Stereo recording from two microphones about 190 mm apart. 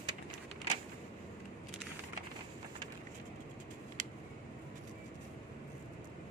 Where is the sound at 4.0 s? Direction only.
40° right (ahead or behind).